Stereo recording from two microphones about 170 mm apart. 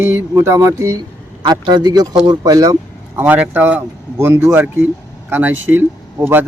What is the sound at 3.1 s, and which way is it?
Speech, 10° right (ahead or behind).